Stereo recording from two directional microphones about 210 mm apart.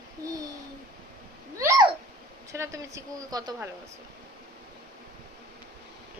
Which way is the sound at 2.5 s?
15° right (ahead or behind).